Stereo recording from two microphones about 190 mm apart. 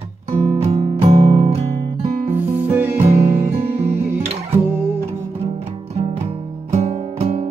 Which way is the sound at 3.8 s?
30° right (ahead or behind).